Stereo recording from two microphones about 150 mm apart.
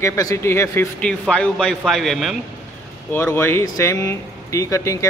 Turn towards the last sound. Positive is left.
turn(degrees=20)  # may be behind; listen again after turning